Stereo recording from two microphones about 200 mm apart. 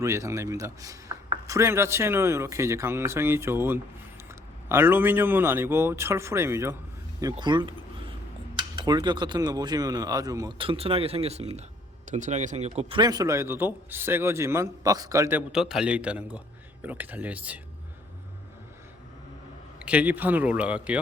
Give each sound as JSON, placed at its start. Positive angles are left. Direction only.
{"t": 0.0, "sound": "a man's voice", "side_deg": -15}
{"t": 8.7, "sound": "a man's voice", "side_deg": -20}
{"t": 19.8, "sound": "a man's voice", "side_deg": -5}